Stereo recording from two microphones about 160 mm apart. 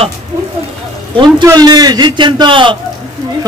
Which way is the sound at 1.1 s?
25° right (ahead or behind).